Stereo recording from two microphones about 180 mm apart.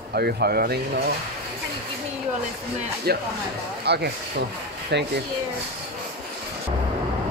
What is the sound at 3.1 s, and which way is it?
Speech, 60° right (ahead or behind).